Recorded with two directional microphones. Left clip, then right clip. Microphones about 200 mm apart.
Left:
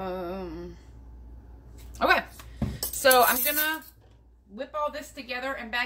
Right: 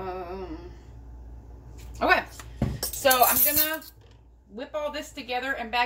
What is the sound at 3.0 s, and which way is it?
Music, 60° left (ahead or behind).